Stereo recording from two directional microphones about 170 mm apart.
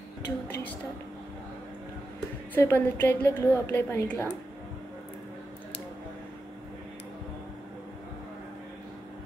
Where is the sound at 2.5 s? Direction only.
15° left (ahead or behind).